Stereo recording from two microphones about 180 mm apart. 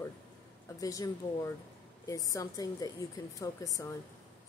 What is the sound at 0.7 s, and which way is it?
A woman's voice, 20° left (ahead or behind).